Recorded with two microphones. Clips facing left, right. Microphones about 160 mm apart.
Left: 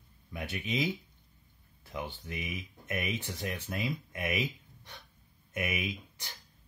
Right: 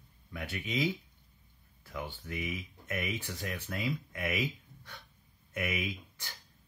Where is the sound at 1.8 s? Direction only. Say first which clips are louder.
Left 1 dB; 20° left (ahead or behind).